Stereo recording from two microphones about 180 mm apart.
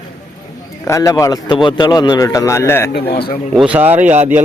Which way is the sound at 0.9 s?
15° left (ahead or behind).